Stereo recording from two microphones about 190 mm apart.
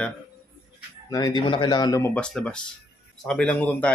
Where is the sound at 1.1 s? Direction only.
20° left (ahead or behind).